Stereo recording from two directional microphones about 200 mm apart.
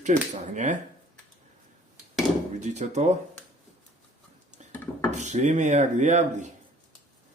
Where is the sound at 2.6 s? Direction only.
35° right (ahead or behind).